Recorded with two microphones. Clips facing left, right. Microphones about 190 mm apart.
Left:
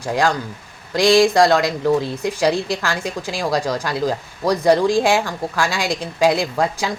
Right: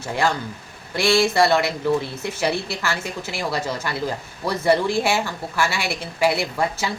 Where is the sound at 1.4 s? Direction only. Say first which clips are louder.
Left 3 dB; 90° left.